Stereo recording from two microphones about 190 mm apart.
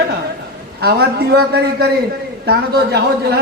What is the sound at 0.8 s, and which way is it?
A man's voice, 55° right (ahead or behind).